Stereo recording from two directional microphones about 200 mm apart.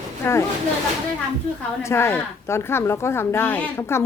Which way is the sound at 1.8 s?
15° left (ahead or behind).